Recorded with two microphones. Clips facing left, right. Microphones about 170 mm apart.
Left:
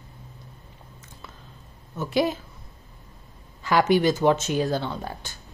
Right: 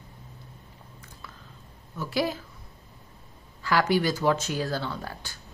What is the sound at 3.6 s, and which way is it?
A woman's voice, 20° left (ahead or behind).